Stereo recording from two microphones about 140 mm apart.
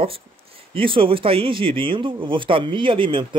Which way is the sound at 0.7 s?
40° right (ahead or behind).